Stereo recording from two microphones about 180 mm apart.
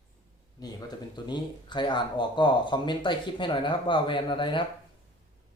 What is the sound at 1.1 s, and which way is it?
Speech, 25° left (ahead or behind).